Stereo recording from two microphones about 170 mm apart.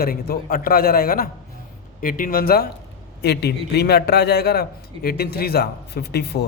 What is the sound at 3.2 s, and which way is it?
A man's voice, 75° left (ahead or behind).